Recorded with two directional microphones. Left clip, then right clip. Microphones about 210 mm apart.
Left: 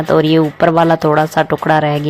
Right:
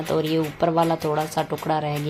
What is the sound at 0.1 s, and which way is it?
Speech, 30° left (ahead or behind).